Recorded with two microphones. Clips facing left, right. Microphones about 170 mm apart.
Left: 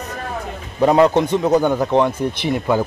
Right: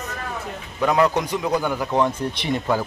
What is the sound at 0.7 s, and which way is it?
A man's voice, 30° left (ahead or behind).